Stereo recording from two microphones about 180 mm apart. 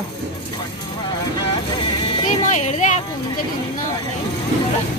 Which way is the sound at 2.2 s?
40° left (ahead or behind).